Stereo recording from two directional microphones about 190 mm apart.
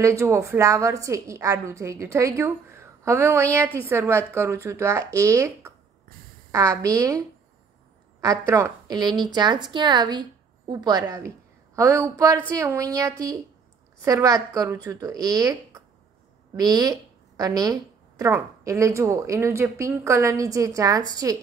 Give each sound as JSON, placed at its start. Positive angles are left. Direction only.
{"t": 0.0, "sound": "a woman's voice", "side_deg": -15}